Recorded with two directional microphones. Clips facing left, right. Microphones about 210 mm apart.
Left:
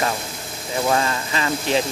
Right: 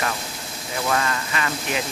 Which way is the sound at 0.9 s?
25° left (ahead or behind).